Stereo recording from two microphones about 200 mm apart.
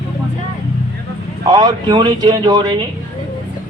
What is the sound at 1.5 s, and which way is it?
A man's voice, 20° right (ahead or behind).